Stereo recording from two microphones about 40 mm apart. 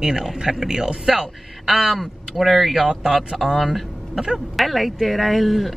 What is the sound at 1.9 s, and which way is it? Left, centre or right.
Speech, centre.